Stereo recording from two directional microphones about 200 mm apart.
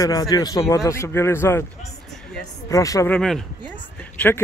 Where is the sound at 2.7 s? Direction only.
15° left (ahead or behind).